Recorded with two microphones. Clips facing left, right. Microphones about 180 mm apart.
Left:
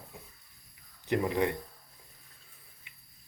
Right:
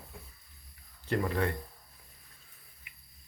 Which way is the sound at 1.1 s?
15° left (ahead or behind).